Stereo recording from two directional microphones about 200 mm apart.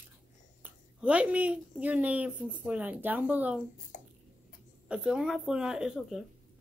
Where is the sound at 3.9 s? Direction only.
40° left (ahead or behind).